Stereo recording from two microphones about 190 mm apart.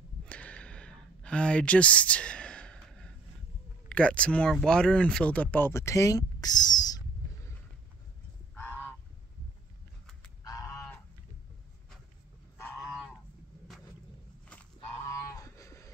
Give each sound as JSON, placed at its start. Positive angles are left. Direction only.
{"t": 0.3, "sound": "a sound", "side_deg": 5}
{"t": 3.9, "sound": "speech", "side_deg": 5}
{"t": 8.5, "sound": "goose", "side_deg": 10}
{"t": 10.4, "sound": "goose", "side_deg": 20}
{"t": 12.8, "sound": "goose", "side_deg": -5}
{"t": 15.0, "sound": "a sound", "side_deg": 15}